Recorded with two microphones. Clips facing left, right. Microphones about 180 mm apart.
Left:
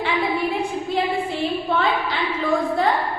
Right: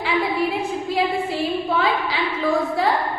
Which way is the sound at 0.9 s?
Centre (ahead or behind).